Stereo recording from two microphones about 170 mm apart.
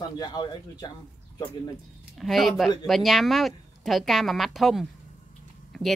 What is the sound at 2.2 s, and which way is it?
Speech, centre (ahead or behind).